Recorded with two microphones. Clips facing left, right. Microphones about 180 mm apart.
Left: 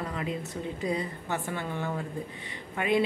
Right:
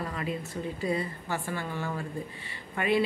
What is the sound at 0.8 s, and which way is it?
A woman's voice, 20° left (ahead or behind).